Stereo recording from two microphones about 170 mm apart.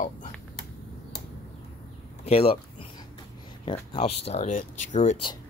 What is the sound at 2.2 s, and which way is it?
Speech, 35° left (ahead or behind).